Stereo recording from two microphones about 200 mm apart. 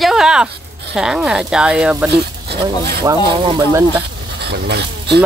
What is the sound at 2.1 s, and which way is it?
Speech, 55° right (ahead or behind).